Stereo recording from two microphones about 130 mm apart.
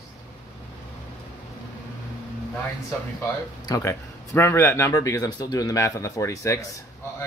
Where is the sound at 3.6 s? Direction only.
25° left (ahead or behind).